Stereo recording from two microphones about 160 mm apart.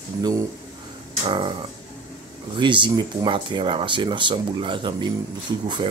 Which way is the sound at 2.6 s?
30° right (ahead or behind).